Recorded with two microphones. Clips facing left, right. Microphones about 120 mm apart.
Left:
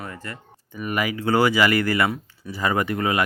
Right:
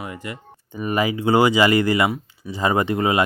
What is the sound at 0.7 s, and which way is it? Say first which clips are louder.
Speech: right 4 dB; 30° right (ahead or behind).